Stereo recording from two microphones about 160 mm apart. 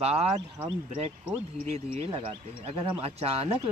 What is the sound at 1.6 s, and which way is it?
Speech, 40° right (ahead or behind).